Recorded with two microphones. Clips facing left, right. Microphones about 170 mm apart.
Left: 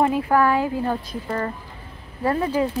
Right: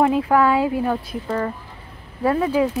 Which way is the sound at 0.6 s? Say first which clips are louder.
Right 3 dB; 20° right (ahead or behind).